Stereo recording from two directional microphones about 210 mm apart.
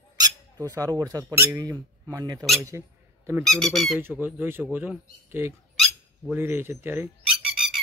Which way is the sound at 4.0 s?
10° right (ahead or behind).